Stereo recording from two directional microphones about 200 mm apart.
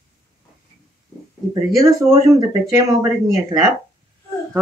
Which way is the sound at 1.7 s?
15° right (ahead or behind).